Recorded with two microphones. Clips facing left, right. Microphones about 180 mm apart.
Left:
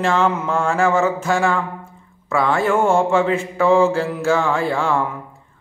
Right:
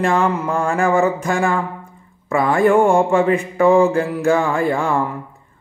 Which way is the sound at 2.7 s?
15° right (ahead or behind).